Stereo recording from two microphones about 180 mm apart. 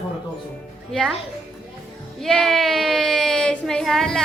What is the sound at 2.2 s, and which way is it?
Speech, centre (ahead or behind).